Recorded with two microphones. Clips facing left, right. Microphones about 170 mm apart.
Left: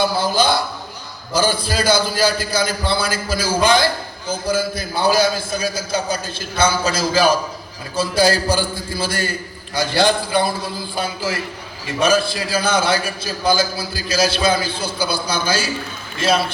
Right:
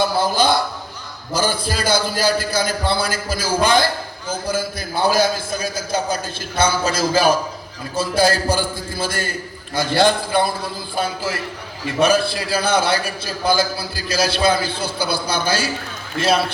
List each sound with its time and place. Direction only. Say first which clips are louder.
0.2 s a man's voice: right 1 dB; 50° right (ahead or behind)
11.9 s a man's voice: even; 60° right (ahead or behind)